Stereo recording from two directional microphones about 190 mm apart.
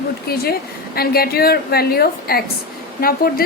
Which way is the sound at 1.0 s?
55° left (ahead or behind).